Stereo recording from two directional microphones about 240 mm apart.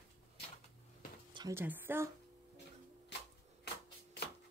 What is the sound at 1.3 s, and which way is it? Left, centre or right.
Speech, centre.